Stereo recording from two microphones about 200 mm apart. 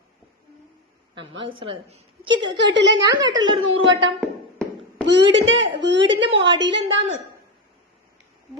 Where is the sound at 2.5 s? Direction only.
60° right (ahead or behind).